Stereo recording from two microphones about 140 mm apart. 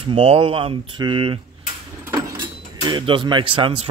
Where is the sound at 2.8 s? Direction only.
35° right (ahead or behind).